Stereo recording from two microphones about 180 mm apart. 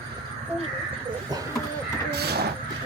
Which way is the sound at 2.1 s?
65° right (ahead or behind).